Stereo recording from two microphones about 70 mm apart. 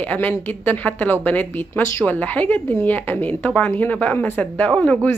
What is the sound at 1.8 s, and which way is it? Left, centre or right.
Speech, left.